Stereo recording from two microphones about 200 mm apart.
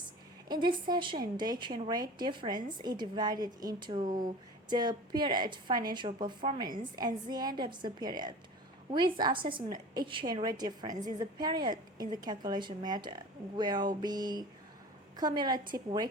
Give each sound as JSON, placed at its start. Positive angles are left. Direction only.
{"t": 0.4, "sound": "a woman's voice", "side_deg": -20}